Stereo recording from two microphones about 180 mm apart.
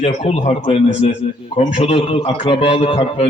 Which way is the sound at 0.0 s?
35° left (ahead or behind).